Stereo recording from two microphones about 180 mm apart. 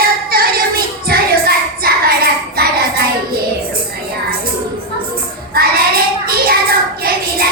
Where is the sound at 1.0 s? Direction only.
55° right (ahead or behind).